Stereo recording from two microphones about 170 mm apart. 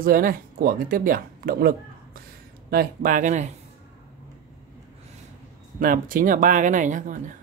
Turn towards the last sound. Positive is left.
turn(degrees=-50)  # may be behind; listen again after turning